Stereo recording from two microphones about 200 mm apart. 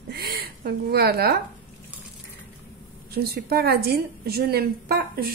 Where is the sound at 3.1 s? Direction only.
50° right (ahead or behind).